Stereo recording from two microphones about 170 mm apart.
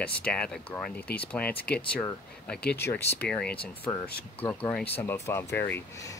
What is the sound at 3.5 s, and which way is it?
Speech, 30° left (ahead or behind).